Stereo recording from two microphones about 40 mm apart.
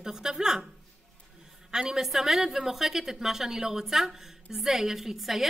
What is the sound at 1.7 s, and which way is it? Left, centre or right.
A woman's voice, centre.